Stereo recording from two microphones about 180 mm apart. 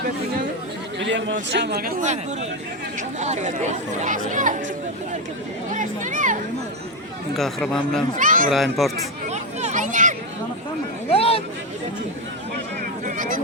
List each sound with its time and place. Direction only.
0.9 s a man's voice: 90° right; by 1.9 s 65° right (ahead or behind)
3.2 s speech: 40° right (ahead or behind)
5.7 s speech: 45° right (ahead or behind)
7.3 s speech: centre (ahead or behind)
8.1 s speech: 45° right (ahead or behind)
8.4 s speech: centre (ahead or behind)
9.3 s a sound: 40° right (ahead or behind)
11.1 s a sound: 30° left (ahead or behind)
13.1 s a sound: 45° right (ahead or behind)